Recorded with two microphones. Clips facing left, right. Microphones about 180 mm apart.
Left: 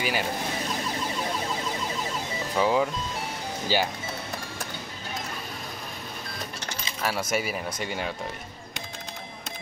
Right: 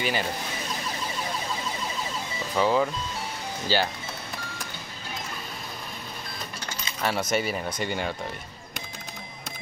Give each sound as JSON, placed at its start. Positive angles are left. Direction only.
{"t": 0.0, "sound": "speech", "side_deg": 5}
{"t": 2.5, "sound": "speech", "side_deg": 5}
{"t": 7.0, "sound": "speech", "side_deg": 5}